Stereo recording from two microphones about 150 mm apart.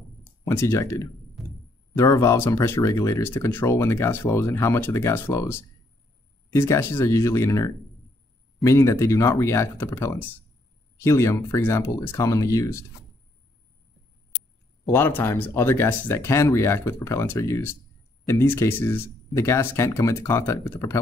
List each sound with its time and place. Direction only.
0.5 s speech: 20° left (ahead or behind)
14.9 s speech: 15° left (ahead or behind)